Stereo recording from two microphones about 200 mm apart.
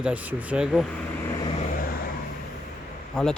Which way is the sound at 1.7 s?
45° left (ahead or behind).